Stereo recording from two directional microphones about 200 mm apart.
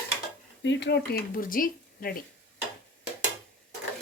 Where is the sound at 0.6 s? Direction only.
60° left (ahead or behind); by 2.2 s 45° left (ahead or behind).